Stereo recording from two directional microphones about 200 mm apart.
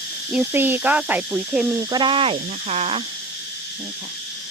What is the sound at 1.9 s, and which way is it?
Speech, 20° right (ahead or behind).